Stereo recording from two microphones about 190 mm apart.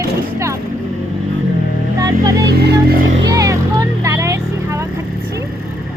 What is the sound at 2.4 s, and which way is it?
Vehicle, 60° right (ahead or behind).